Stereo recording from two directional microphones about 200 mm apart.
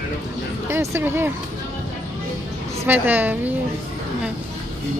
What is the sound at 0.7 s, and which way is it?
Speech, 15° right (ahead or behind).